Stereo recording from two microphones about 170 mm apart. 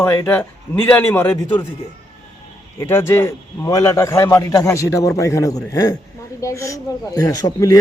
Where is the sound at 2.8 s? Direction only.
15° left (ahead or behind).